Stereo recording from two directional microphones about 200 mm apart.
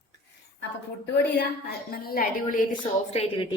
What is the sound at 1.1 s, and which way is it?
A woman's voice, 55° left (ahead or behind).